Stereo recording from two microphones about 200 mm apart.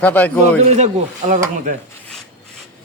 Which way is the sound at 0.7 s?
35° right (ahead or behind).